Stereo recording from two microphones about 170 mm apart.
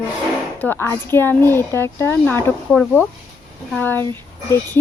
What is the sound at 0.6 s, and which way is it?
Speech, 15° left (ahead or behind).